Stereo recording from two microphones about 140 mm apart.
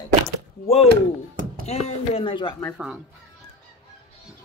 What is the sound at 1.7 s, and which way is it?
Speech, 50° left (ahead or behind).